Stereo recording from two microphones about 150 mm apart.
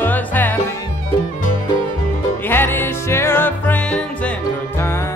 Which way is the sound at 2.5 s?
15° left (ahead or behind).